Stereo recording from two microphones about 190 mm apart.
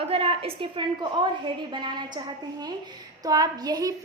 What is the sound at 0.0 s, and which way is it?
A woman's voice, 30° right (ahead or behind).